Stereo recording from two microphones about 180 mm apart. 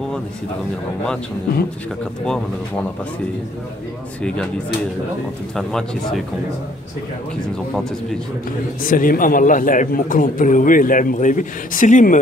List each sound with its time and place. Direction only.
5.6 s speech: centre (ahead or behind)
8.8 s a man's voice: 50° left (ahead or behind)